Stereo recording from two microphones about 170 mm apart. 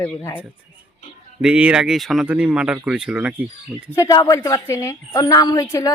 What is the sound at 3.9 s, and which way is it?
A woman's voice, 20° left (ahead or behind).